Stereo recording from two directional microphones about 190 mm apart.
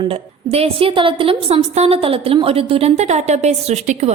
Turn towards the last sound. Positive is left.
turn(degrees=-35)  # may be behind; listen again after turning